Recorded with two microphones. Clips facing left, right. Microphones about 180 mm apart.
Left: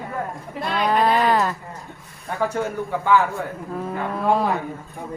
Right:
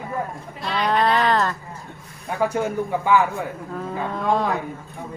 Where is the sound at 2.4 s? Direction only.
15° right (ahead or behind).